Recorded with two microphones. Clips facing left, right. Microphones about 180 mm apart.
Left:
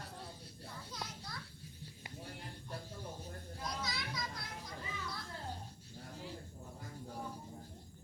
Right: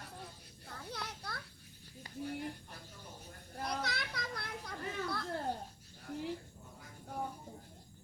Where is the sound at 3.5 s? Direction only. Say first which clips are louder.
Right 5 dB; 60° right (ahead or behind).